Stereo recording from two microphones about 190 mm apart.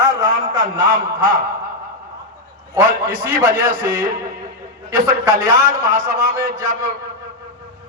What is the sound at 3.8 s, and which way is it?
Speech, 45° right (ahead or behind).